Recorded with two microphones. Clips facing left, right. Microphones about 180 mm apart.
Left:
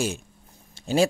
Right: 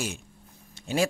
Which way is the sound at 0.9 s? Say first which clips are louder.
Left 5 dB; 30° left (ahead or behind).